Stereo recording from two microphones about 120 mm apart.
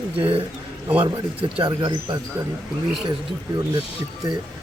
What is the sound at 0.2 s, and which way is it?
Speech, 50° right (ahead or behind).